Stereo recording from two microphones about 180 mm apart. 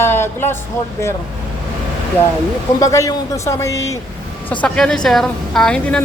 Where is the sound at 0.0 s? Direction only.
15° left (ahead or behind).